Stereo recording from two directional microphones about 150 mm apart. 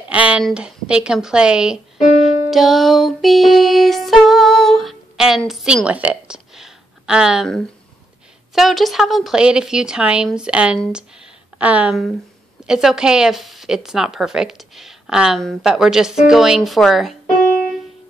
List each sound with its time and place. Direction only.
0.1 s a woman's voice: 10° right (ahead or behind)